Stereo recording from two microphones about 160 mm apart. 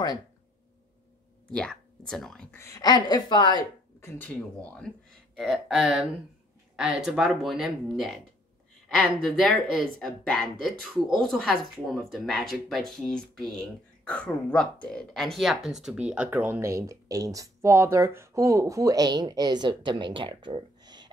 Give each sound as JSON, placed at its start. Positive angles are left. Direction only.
{"t": 1.5, "sound": "speech", "side_deg": 5}
{"t": 2.6, "sound": "a woman's voice", "side_deg": 25}
{"t": 4.7, "sound": "speech", "side_deg": 5}